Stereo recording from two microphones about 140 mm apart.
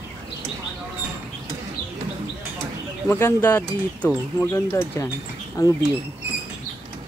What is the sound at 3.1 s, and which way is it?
Speech, 20° left (ahead or behind).